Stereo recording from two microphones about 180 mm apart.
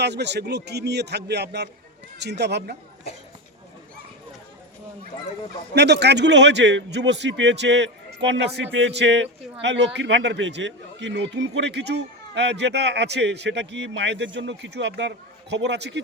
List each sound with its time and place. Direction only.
0.0 s a man's voice: 70° right (ahead or behind)
5.7 s a man's voice: 70° right (ahead or behind)